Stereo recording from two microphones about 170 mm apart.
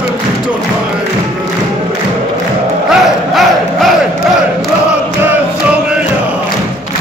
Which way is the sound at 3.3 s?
Centre (ahead or behind).